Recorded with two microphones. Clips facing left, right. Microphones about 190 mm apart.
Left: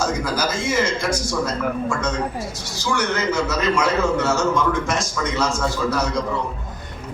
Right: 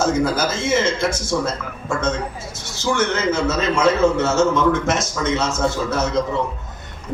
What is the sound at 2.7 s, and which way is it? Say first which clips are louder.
A man's voice: right 3 dB; 25° right (ahead or behind).